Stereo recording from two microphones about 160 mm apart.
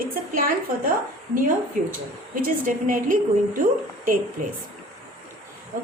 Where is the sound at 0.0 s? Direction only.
65° right (ahead or behind).